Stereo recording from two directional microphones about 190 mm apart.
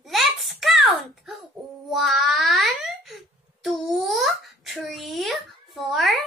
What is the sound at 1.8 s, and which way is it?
Speech, centre (ahead or behind).